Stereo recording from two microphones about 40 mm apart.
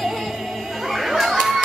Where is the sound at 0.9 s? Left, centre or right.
Centre.